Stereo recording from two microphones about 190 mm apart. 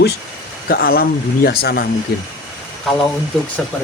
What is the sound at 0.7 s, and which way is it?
Speech, 55° left (ahead or behind).